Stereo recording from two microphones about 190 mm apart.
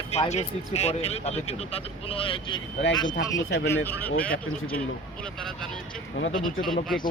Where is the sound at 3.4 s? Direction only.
60° left (ahead or behind).